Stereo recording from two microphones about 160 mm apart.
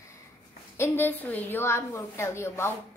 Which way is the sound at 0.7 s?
15° left (ahead or behind).